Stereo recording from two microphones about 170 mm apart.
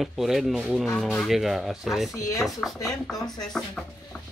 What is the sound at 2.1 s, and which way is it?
Speech, 20° left (ahead or behind).